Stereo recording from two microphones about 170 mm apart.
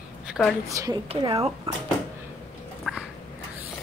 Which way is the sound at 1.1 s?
35° right (ahead or behind).